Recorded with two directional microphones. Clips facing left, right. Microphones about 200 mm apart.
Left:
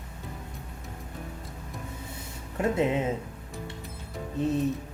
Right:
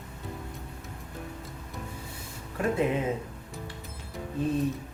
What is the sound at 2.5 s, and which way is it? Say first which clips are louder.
Speech: left 1 dB; 25° left (ahead or behind).